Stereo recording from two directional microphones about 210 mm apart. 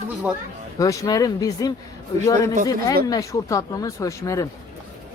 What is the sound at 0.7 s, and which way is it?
Speech, 15° left (ahead or behind).